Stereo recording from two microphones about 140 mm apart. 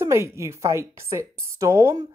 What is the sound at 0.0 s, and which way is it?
Speech, 20° right (ahead or behind).